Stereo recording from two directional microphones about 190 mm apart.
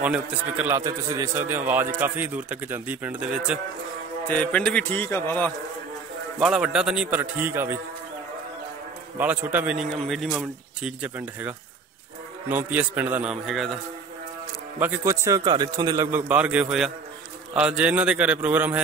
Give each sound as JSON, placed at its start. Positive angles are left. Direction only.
{"t": 0.0, "sound": "a man's voice", "side_deg": -5}
{"t": 4.3, "sound": "a man's voice", "side_deg": 5}
{"t": 6.4, "sound": "a man's voice", "side_deg": -5}
{"t": 9.2, "sound": "a man's voice", "side_deg": -10}
{"t": 14.8, "sound": "a man's voice", "side_deg": -15}